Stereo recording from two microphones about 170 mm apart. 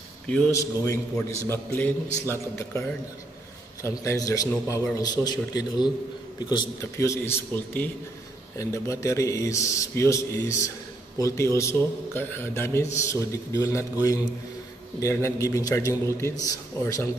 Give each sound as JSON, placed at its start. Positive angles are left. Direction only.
{"t": 0.3, "sound": "a man's voice", "side_deg": 5}
{"t": 3.8, "sound": "a man's voice", "side_deg": 15}